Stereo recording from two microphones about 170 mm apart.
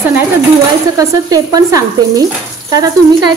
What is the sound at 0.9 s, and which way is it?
A woman's voice, 20° right (ahead or behind).